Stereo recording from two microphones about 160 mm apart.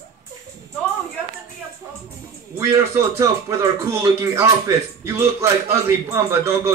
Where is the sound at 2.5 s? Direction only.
20° right (ahead or behind).